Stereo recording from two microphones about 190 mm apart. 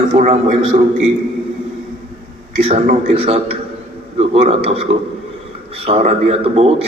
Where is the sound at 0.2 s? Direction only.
35° right (ahead or behind).